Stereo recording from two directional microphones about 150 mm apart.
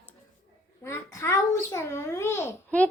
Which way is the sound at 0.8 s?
20° left (ahead or behind).